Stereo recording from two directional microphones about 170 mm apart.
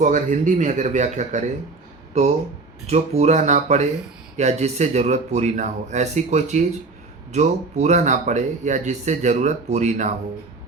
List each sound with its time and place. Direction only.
0.0 s speech: 50° right (ahead or behind)
2.8 s speech: 40° right (ahead or behind)